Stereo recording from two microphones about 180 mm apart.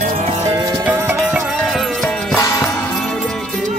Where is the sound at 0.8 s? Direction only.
10° right (ahead or behind).